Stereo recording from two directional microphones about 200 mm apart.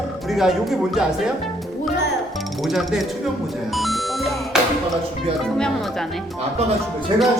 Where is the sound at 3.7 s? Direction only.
Centre (ahead or behind).